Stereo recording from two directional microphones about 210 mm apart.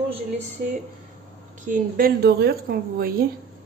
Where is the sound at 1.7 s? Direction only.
40° right (ahead or behind).